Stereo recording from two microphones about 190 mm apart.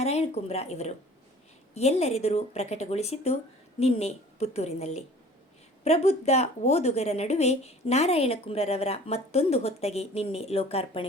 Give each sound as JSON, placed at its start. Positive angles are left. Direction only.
{"t": 0.0, "sound": "a woman's voice", "side_deg": 35}